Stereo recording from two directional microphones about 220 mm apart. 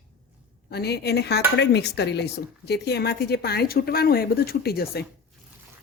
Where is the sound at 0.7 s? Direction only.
45° left (ahead or behind).